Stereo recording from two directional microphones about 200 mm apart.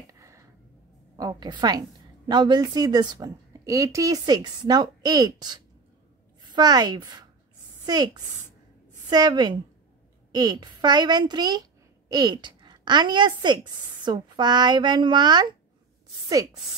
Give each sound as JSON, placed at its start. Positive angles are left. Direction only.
{"t": 1.1, "sound": "a woman's voice", "side_deg": -20}